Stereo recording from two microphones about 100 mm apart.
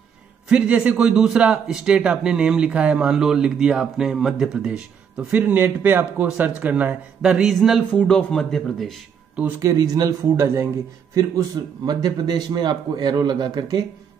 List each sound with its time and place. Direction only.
0.5 s a man's voice: 10° right (ahead or behind)
7.9 s speech: 10° left (ahead or behind)
9.6 s speech: 35° right (ahead or behind)
11.1 s a man's voice: 40° right (ahead or behind)